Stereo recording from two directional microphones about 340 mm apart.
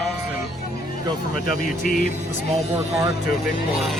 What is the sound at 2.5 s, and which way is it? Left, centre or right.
Speech, centre.